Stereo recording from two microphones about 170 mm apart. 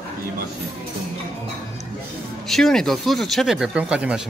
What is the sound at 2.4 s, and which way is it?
Speech, centre (ahead or behind).